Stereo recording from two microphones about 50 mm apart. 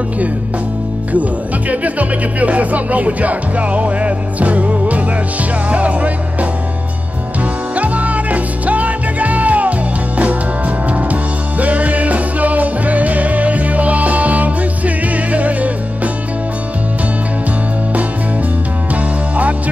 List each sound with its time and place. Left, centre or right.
1.7 s speech: right
7.7 s music: right